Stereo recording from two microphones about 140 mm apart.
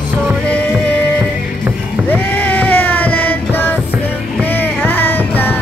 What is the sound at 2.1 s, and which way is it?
Music, 10° left (ahead or behind).